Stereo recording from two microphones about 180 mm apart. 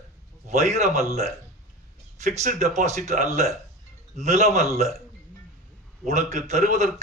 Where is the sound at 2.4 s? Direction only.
40° right (ahead or behind).